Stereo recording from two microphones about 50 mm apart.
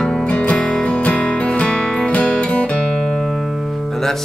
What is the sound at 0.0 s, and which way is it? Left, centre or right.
Music, centre.